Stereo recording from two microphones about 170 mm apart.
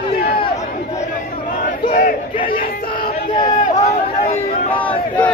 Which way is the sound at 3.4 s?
45° left (ahead or behind).